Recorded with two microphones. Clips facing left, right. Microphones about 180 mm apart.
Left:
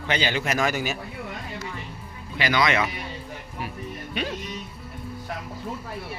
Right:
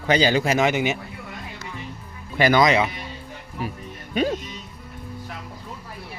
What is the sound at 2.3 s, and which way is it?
Speech, 45° right (ahead or behind).